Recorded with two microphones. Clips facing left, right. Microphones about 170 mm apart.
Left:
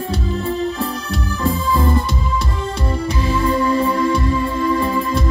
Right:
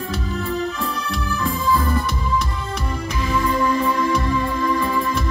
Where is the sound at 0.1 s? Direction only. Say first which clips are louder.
Left 3 dB; 30° left (ahead or behind).